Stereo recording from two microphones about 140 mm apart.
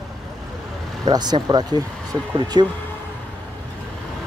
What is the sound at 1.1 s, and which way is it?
Speech, 30° right (ahead or behind).